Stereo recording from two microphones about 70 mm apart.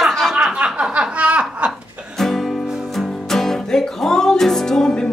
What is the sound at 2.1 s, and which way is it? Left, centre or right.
Music, centre.